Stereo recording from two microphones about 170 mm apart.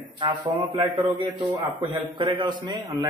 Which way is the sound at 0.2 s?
25° right (ahead or behind).